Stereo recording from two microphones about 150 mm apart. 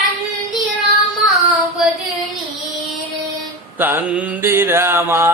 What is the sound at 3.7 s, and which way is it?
Mantra, 10° right (ahead or behind).